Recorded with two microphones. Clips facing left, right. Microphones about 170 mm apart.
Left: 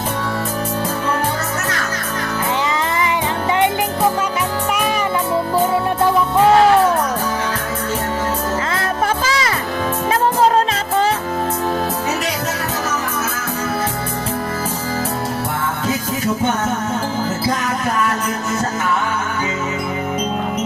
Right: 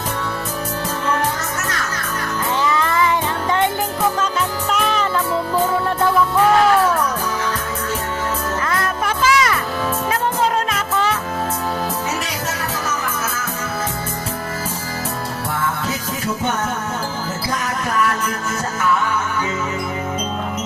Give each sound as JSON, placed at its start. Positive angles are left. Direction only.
{"t": 2.6, "sound": "music", "side_deg": 20}
{"t": 4.7, "sound": "music", "side_deg": 10}
{"t": 8.6, "sound": "music", "side_deg": 25}